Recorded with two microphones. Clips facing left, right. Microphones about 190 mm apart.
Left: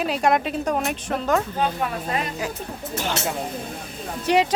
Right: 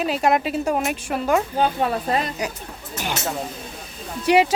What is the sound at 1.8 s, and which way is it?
Speech, 35° right (ahead or behind).